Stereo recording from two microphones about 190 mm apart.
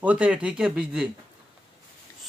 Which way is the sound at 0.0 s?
5° right (ahead or behind).